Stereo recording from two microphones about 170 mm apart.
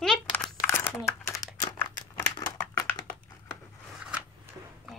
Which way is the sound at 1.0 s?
15° left (ahead or behind).